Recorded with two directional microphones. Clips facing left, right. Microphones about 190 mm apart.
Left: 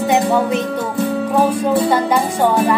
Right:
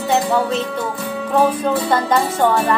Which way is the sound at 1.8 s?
10° left (ahead or behind).